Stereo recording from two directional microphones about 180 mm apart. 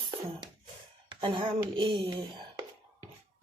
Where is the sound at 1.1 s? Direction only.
30° right (ahead or behind).